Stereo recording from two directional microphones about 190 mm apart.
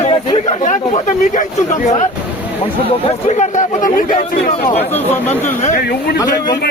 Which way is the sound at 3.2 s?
40° left (ahead or behind).